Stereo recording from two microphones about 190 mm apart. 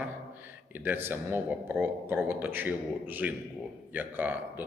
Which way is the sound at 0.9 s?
10° right (ahead or behind).